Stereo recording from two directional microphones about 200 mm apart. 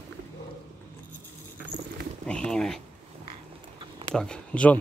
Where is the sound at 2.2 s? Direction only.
5° left (ahead or behind).